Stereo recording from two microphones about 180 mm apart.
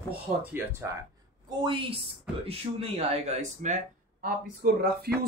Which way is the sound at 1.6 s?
30° right (ahead or behind).